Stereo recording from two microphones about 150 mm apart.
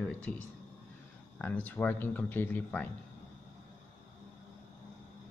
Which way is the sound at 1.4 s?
10° left (ahead or behind).